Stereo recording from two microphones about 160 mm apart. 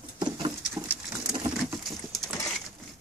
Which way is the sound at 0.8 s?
10° right (ahead or behind).